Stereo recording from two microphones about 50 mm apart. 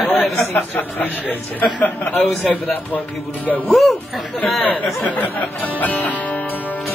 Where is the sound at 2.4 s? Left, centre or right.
Centre.